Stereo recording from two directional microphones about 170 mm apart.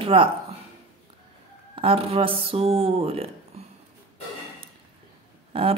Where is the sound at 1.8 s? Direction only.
35° right (ahead or behind).